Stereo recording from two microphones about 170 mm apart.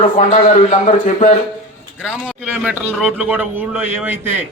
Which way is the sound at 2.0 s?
5° right (ahead or behind).